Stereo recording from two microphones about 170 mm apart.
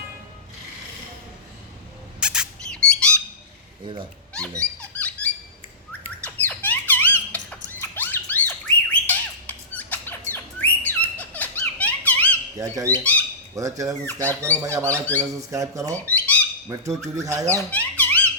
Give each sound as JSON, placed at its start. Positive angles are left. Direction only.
{"t": 2.2, "sound": "rodents", "side_deg": -5}
{"t": 2.7, "sound": "squawk", "side_deg": 5}
{"t": 4.8, "sound": "a sound", "side_deg": 10}
{"t": 6.2, "sound": "squawk", "side_deg": 10}
{"t": 12.5, "sound": "speech", "side_deg": -20}
{"t": 12.9, "sound": "speech", "side_deg": 10}
{"t": 13.6, "sound": "speech", "side_deg": -20}
{"t": 14.3, "sound": "speech", "side_deg": 10}
{"t": 14.6, "sound": "speech", "side_deg": -15}
{"t": 14.8, "sound": "speech", "side_deg": 10}
{"t": 15.4, "sound": "speech", "side_deg": -20}
{"t": 16.0, "sound": "squawk", "side_deg": 10}
{"t": 16.6, "sound": "speech", "side_deg": -15}
{"t": 17.7, "sound": "a sound", "side_deg": 10}